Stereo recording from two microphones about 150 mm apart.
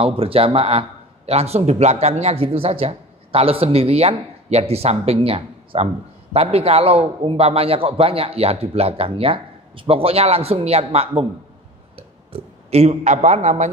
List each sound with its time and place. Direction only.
0.0 s a man's voice: 40° right (ahead or behind)
12.3 s speech: 45° right (ahead or behind)